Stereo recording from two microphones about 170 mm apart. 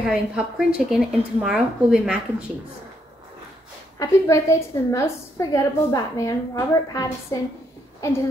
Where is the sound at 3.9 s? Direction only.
20° left (ahead or behind).